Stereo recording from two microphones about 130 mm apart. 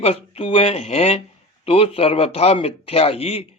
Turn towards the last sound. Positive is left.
turn(degrees=50)  # may be behind; listen again after turning